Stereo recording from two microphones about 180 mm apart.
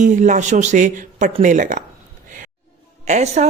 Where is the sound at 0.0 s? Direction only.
45° right (ahead or behind).